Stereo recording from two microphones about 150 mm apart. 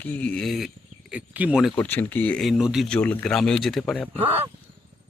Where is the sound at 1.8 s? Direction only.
10° left (ahead or behind).